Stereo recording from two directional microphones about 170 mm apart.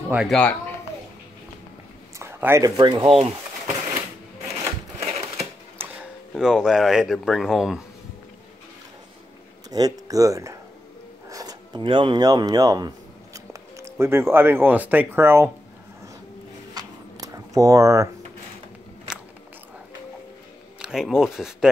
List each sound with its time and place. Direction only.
0.1 s speech: centre (ahead or behind)
2.1 s speech: 15° right (ahead or behind); by 3.7 s 35° right (ahead or behind)
5.8 s speech: 5° right (ahead or behind)
9.7 s speech: 20° right (ahead or behind)
16.7 s a sound: 20° right (ahead or behind)
20.8 s speech: 5° right (ahead or behind)